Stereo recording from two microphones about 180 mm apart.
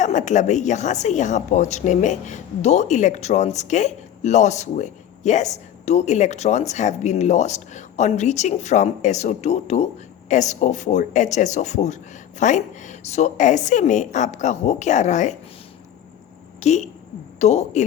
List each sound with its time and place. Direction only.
0.0 s a woman's voice: 40° left (ahead or behind)
16.6 s a woman's voice: 40° left (ahead or behind)